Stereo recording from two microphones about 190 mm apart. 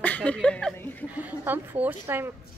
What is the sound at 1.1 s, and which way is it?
A woman's voice, 10° right (ahead or behind).